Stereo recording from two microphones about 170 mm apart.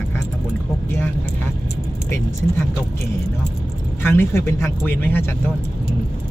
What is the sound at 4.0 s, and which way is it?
Speech, 15° left (ahead or behind).